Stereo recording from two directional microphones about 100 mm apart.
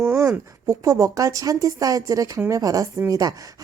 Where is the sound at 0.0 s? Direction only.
30° right (ahead or behind).